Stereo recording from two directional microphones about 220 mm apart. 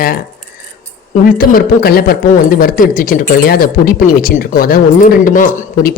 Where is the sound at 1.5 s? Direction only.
45° left (ahead or behind).